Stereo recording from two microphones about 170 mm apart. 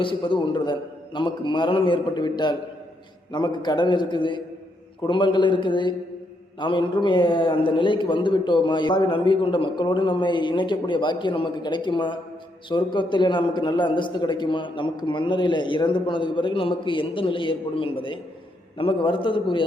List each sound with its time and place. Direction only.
0.0 s a man's voice: 30° left (ahead or behind)